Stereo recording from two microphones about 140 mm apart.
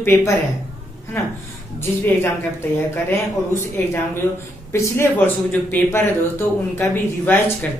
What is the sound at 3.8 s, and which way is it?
Speech, 15° left (ahead or behind).